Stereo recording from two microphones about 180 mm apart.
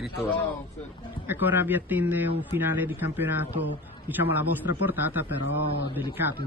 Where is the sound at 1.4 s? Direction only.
10° right (ahead or behind).